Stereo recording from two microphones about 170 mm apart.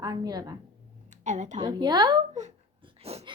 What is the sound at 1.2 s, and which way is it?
Speech, 45° right (ahead or behind).